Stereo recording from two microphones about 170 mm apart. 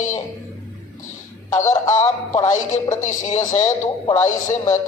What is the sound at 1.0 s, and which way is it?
Music, 50° left (ahead or behind).